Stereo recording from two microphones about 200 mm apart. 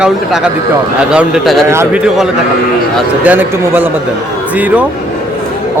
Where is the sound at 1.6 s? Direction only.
15° right (ahead or behind).